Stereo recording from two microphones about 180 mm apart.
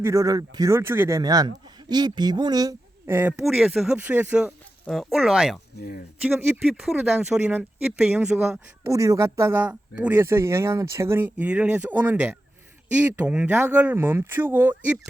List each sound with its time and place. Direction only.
0.0 s speech: 15° right (ahead or behind)
4.9 s speech: centre (ahead or behind)
5.7 s speech: 65° left (ahead or behind)
6.2 s speech: 10° right (ahead or behind)